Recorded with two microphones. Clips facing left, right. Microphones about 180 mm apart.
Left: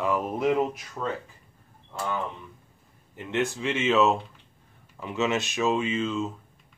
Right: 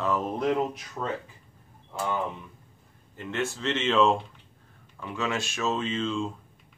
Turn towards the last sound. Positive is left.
turn(degrees=5)  # may be behind; listen again after turning